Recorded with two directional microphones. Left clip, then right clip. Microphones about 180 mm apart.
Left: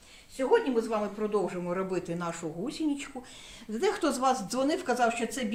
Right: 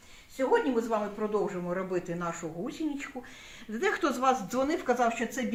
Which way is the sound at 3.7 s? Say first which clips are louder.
Even; 35° left (ahead or behind).